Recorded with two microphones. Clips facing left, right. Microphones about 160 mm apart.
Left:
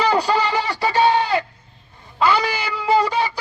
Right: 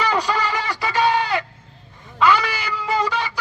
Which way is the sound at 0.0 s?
35° left (ahead or behind).